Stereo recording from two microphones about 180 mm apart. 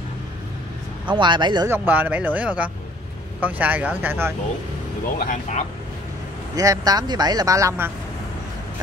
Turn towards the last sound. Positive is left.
turn(degrees=-15)  # may be behind; listen again after turning